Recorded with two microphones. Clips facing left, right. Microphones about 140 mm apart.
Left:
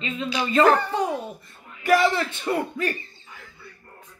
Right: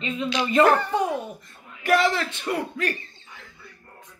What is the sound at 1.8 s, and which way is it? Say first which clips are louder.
Speech: left 1 dB; 5° left (ahead or behind).